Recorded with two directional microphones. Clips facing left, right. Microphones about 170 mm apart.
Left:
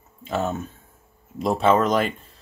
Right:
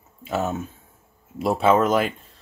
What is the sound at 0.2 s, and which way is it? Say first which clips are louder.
Speech: even; 5° right (ahead or behind).